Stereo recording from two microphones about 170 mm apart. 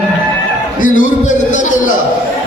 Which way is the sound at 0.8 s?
50° left (ahead or behind).